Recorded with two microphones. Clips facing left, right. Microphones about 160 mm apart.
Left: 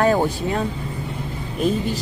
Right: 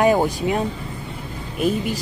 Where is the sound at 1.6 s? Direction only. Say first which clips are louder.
Even; 10° right (ahead or behind).